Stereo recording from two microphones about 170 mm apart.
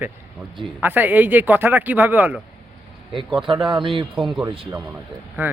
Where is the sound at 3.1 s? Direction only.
30° right (ahead or behind).